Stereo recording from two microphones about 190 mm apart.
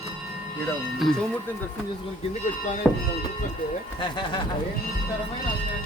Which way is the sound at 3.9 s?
25° left (ahead or behind).